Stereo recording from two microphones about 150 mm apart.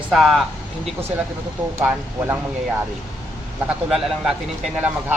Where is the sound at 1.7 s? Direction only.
15° right (ahead or behind).